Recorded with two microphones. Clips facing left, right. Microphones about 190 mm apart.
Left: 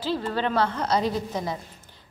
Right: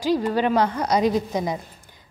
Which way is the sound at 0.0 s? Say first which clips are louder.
Right 6 dB; 15° right (ahead or behind).